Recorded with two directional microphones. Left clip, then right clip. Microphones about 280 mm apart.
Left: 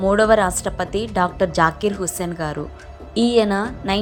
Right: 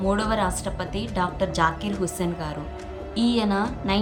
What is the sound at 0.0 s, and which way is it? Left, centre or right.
A woman's voice, centre.